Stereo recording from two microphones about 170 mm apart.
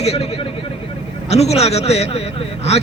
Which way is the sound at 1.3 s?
40° left (ahead or behind).